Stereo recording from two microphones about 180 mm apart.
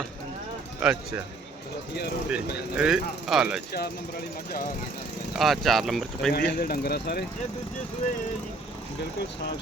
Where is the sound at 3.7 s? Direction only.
60° left (ahead or behind).